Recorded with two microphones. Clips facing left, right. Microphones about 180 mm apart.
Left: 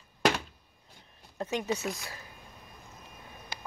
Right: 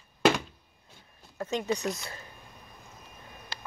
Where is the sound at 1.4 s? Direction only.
15° left (ahead or behind).